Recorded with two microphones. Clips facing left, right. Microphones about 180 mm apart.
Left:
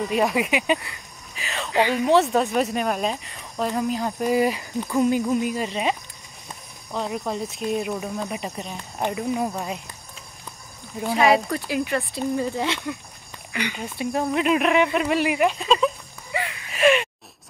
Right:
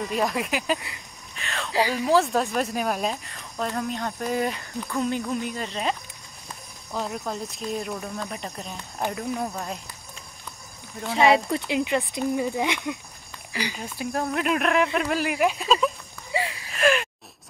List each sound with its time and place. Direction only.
0.1 s speech: 5° left (ahead or behind)
11.5 s speech: 20° right (ahead or behind)
13.5 s speech: 35° right (ahead or behind)
13.7 s speech: centre (ahead or behind)
16.3 s a sound: 30° right (ahead or behind)
16.7 s gasp: centre (ahead or behind)